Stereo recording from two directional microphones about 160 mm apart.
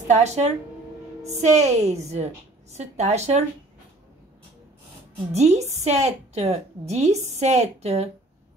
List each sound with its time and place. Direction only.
0.1 s a woman's voice: 45° right (ahead or behind)
5.3 s a woman's voice: 45° right (ahead or behind)